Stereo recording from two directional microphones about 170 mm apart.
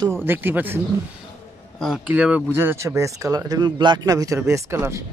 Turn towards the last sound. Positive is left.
turn(degrees=-15)  # may be behind; listen again after turning